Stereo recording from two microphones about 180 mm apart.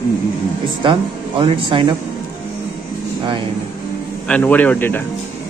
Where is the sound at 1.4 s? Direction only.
25° right (ahead or behind).